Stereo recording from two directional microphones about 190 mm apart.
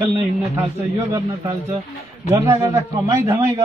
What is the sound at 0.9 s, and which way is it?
A man's voice, 20° right (ahead or behind).